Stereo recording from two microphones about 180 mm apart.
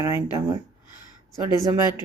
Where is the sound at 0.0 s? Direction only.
15° right (ahead or behind).